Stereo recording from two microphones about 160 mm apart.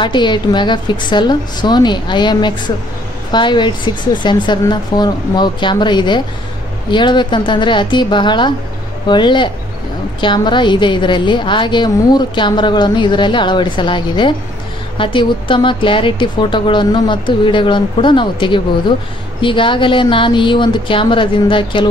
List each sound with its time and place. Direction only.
0.0 s a woman's voice: 30° left (ahead or behind)